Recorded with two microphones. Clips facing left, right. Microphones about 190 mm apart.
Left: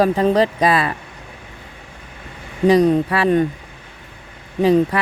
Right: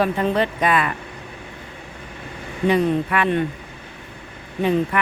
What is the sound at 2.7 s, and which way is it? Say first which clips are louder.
Speech: left 5 dB; 40° left (ahead or behind).